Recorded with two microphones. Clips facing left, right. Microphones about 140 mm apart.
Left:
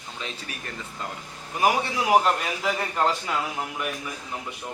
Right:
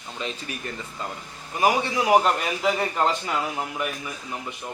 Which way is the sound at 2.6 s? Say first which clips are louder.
Right 3 dB; centre (ahead or behind).